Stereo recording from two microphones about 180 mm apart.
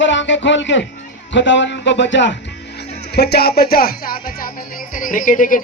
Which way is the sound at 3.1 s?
65° left (ahead or behind).